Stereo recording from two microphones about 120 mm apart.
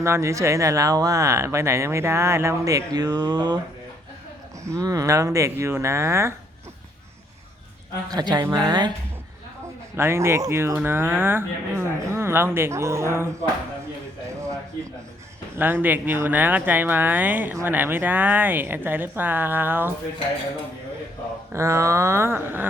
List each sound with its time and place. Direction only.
0.0 s speech: 25° right (ahead or behind)
4.6 s speech: 25° right (ahead or behind)
8.1 s speech: 35° right (ahead or behind)
9.9 s speech: 20° right (ahead or behind)
15.5 s speech: 15° right (ahead or behind)
21.5 s speech: 25° right (ahead or behind)